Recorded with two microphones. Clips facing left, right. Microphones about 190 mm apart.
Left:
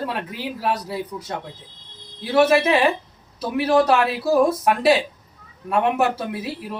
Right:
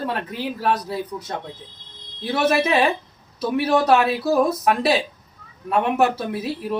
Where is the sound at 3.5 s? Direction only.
Centre (ahead or behind).